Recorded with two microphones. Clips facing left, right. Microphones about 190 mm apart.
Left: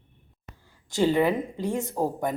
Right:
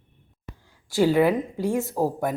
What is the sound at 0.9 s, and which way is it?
Speech, 10° right (ahead or behind).